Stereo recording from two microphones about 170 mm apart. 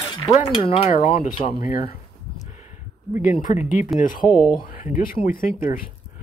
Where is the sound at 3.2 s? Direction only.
50° left (ahead or behind).